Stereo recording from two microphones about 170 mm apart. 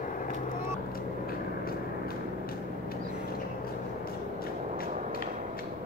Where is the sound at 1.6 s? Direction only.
60° left (ahead or behind).